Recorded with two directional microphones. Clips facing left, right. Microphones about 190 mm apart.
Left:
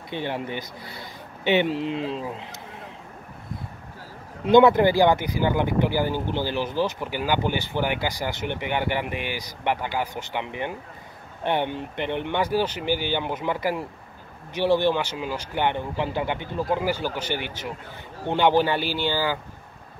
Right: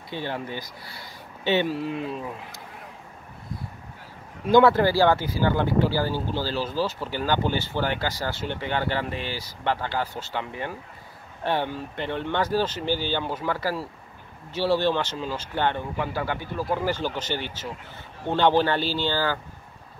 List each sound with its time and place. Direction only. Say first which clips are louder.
0.1 s speech: left 2 dB; 20° left (ahead or behind)
4.5 s speech: left 2 dB; 20° left (ahead or behind)